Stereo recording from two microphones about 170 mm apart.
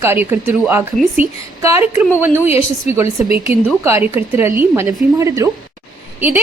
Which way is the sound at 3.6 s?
15° right (ahead or behind).